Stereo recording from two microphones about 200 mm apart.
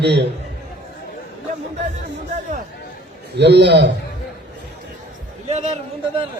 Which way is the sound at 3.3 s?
60° right (ahead or behind).